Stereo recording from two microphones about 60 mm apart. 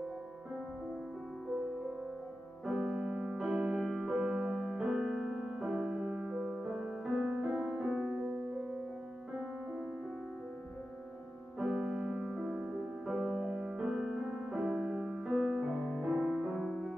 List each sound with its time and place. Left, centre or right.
2.8 s music: centre
11.6 s music: centre